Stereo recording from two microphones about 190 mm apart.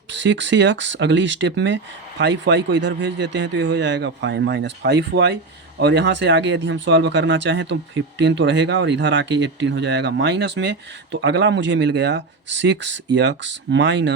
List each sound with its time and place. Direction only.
0.1 s speech: 70° right (ahead or behind)